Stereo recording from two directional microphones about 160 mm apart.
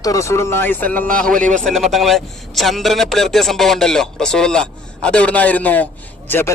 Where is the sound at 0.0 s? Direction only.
20° left (ahead or behind).